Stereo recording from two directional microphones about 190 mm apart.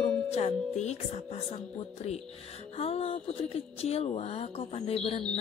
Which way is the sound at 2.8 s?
30° left (ahead or behind).